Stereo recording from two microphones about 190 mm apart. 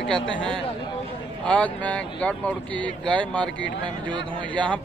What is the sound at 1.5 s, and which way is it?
Speech, 5° left (ahead or behind).